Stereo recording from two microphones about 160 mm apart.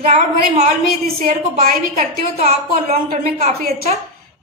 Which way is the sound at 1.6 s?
60° right (ahead or behind).